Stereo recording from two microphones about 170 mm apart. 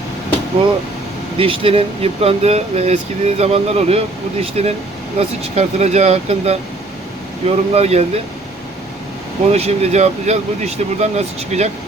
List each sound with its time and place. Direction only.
1.4 s speech: 35° right (ahead or behind)
9.5 s speech: 40° right (ahead or behind)